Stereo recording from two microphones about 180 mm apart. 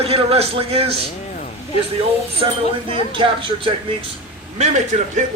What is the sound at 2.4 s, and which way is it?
A man's voice, 30° right (ahead or behind).